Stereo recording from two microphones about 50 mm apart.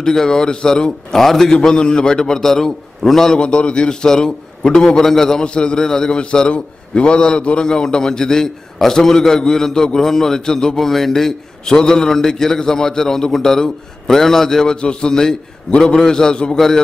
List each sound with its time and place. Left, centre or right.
0.0 s a man's voice: centre
1.1 s a man's voice: centre
3.3 s a man's voice: centre